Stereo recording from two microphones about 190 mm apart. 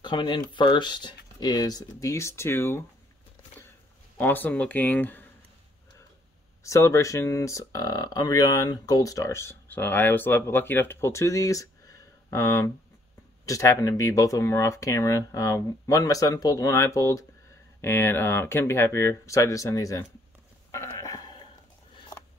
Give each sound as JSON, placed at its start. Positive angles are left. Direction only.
{"t": 0.0, "sound": "speech", "side_deg": 25}
{"t": 4.2, "sound": "speech", "side_deg": 10}
{"t": 6.6, "sound": "speech", "side_deg": 15}
{"t": 20.7, "sound": "a sound", "side_deg": 15}